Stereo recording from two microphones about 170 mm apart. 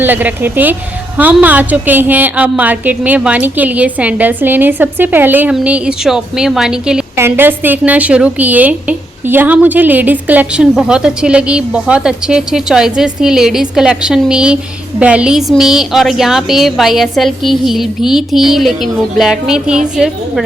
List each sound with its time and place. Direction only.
0.0 s a woman's voice: 10° right (ahead or behind)